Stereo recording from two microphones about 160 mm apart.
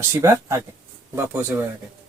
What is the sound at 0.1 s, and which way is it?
Speech, 20° right (ahead or behind).